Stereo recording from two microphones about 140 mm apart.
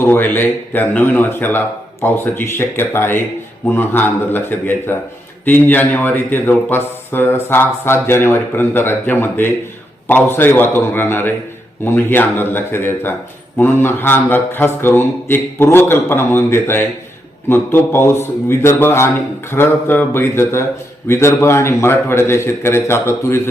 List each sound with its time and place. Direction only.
0.0 s a man's voice: 15° left (ahead or behind)